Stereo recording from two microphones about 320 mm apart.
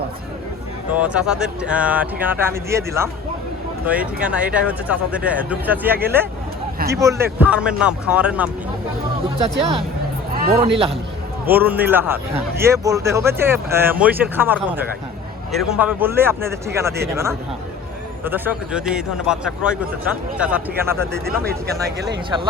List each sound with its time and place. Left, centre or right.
0.9 s speech: centre
10.4 s speech: right
11.4 s speech: centre
18.3 s speech: centre
21.2 s speech: right